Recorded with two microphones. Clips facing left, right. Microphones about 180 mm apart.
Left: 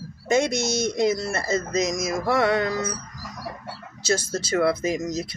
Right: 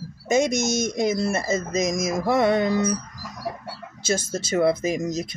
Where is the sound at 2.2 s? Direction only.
20° right (ahead or behind).